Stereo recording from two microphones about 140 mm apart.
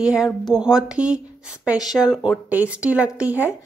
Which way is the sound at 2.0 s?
10° left (ahead or behind).